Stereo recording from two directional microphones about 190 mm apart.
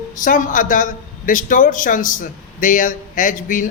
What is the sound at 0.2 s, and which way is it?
A man's voice, 45° left (ahead or behind).